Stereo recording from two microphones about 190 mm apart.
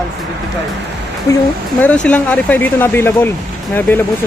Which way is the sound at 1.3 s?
20° left (ahead or behind).